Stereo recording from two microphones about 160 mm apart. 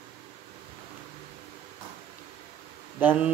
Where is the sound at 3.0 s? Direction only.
10° right (ahead or behind).